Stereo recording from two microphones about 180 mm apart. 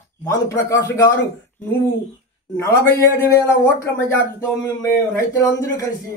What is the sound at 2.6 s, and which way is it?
A man's voice, 15° left (ahead or behind).